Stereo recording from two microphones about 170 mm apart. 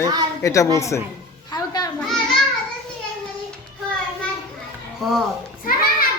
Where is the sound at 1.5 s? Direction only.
20° left (ahead or behind).